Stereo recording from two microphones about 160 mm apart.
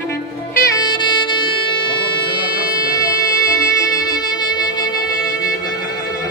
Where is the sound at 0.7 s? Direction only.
30° left (ahead or behind).